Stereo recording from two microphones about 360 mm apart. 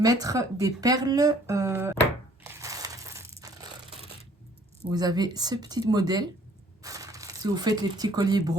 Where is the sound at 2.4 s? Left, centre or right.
Centre.